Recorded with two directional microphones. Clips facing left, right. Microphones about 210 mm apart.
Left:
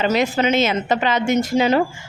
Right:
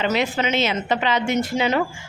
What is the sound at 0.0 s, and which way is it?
A woman's voice, 40° left (ahead or behind).